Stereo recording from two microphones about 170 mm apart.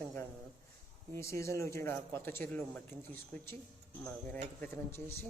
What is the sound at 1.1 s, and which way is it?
Speech, 15° left (ahead or behind).